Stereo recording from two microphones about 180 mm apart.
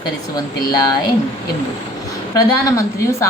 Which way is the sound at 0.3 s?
20° left (ahead or behind).